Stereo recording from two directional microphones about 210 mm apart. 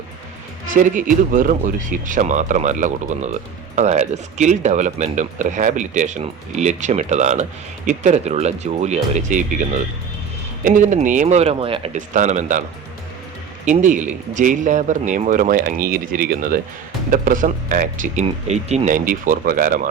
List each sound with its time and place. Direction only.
0.7 s speech: 40° right (ahead or behind)
13.7 s speech: 35° right (ahead or behind)